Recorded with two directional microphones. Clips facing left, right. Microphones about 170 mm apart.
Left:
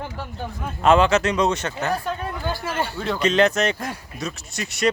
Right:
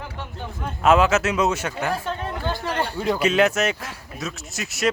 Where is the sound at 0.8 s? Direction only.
5° right (ahead or behind).